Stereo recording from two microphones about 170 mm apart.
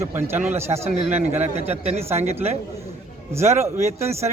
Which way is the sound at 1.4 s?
40° right (ahead or behind).